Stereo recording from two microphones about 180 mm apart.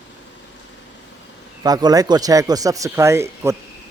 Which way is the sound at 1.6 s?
20° right (ahead or behind).